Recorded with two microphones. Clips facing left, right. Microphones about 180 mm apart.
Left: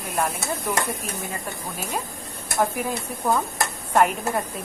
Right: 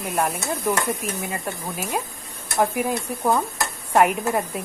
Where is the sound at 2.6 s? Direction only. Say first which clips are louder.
Right 3 dB; 10° right (ahead or behind).